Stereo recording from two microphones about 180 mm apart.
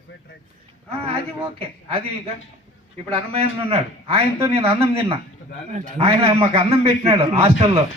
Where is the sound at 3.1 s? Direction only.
35° right (ahead or behind).